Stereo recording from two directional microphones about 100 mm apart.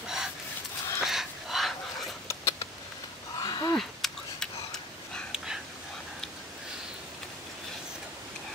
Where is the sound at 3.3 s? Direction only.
45° left (ahead or behind).